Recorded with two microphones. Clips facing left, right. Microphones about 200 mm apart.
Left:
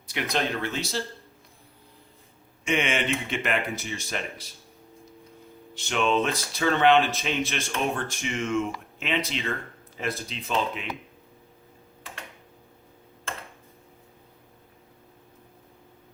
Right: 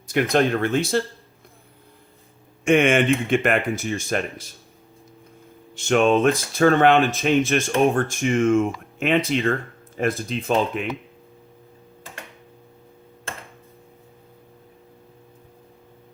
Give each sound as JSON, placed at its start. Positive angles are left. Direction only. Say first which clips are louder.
{"t": 0.1, "sound": "speech", "louder": "right 9 dB", "side_deg": -50}
{"t": 2.6, "sound": "speech", "louder": "right 9 dB", "side_deg": -50}
{"t": 5.7, "sound": "speech", "louder": "right 7 dB", "side_deg": -50}